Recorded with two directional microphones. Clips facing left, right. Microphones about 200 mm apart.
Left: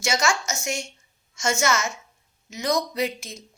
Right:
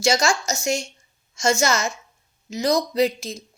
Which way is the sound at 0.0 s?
35° right (ahead or behind).